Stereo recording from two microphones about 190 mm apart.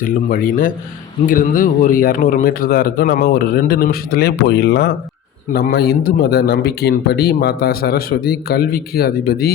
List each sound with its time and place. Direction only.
0.0 s a man's voice: 45° left (ahead or behind)